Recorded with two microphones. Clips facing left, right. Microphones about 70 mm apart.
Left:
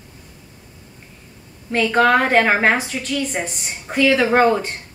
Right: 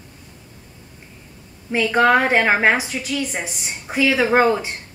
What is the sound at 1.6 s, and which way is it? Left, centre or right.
A woman's voice, centre.